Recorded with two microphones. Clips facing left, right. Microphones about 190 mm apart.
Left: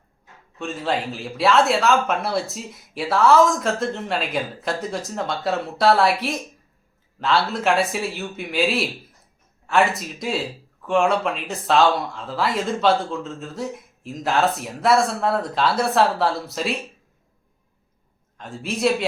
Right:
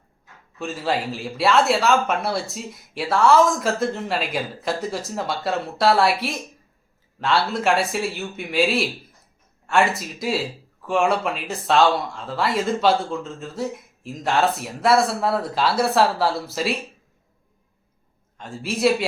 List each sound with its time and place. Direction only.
0.6 s speech: centre (ahead or behind)
18.3 s speech: centre (ahead or behind)